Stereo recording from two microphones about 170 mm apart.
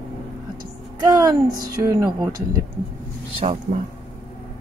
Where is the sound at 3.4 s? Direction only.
40° right (ahead or behind).